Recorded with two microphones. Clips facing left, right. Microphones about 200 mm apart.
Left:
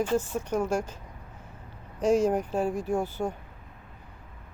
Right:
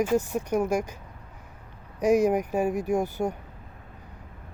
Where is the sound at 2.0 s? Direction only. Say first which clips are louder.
Right 2 dB; 10° right (ahead or behind).